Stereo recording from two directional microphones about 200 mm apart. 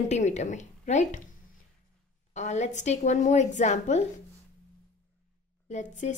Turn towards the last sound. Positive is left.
turn(degrees=35)  # may be behind; listen again after turning